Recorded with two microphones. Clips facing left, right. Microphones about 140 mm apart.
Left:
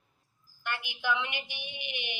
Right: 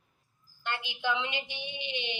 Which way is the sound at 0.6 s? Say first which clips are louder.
Right 2 dB; 20° right (ahead or behind).